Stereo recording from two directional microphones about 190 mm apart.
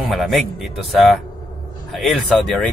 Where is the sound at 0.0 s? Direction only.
Centre (ahead or behind).